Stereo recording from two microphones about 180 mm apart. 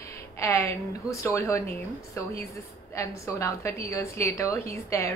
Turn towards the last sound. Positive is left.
turn(degrees=15)  # may be behind; listen again after turning